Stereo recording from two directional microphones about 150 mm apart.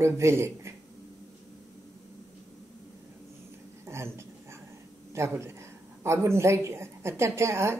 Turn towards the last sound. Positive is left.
turn(degrees=-15)  # may be behind; listen again after turning